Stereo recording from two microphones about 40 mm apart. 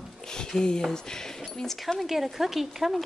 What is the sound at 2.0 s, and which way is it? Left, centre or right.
A woman's voice, centre.